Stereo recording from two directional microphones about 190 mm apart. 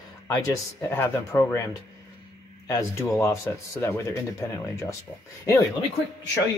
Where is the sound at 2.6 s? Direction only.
15° left (ahead or behind).